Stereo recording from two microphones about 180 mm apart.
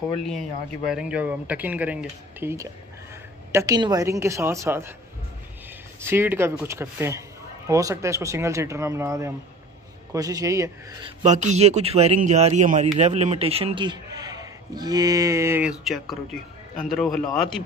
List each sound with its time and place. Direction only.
0.2 s a man's voice: centre (ahead or behind)
5.9 s a man's voice: 15° right (ahead or behind)
11.2 s a man's voice: 40° right (ahead or behind); by 15.7 s 15° right (ahead or behind)
15.8 s a man's voice: centre (ahead or behind)